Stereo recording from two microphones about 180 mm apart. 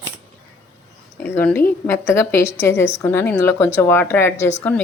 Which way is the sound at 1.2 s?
10° left (ahead or behind).